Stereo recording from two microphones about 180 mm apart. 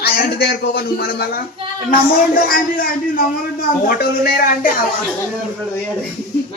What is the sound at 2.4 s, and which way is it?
A man's voice, 55° left (ahead or behind).